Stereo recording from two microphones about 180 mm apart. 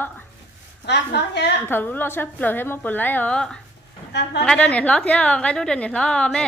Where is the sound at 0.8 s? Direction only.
70° left (ahead or behind).